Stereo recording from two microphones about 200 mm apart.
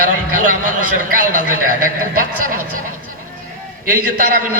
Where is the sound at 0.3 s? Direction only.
40° right (ahead or behind).